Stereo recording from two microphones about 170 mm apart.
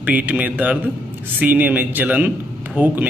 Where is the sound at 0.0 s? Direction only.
10° right (ahead or behind).